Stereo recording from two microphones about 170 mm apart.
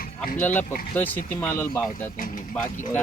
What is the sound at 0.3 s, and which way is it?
Speech, 10° left (ahead or behind).